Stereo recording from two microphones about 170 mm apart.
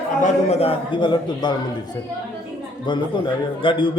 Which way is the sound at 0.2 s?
35° left (ahead or behind).